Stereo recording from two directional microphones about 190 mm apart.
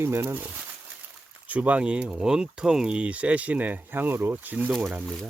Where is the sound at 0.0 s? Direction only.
15° right (ahead or behind).